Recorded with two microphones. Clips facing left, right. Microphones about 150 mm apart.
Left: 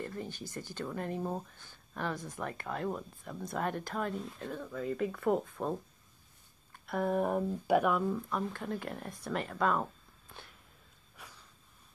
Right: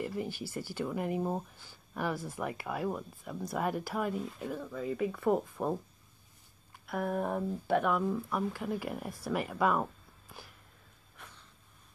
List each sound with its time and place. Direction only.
0.0 s speech: 10° right (ahead or behind)